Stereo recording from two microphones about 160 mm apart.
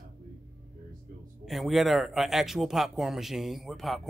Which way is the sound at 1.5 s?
Centre (ahead or behind).